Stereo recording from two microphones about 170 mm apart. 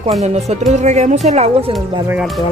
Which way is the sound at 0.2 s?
40° right (ahead or behind).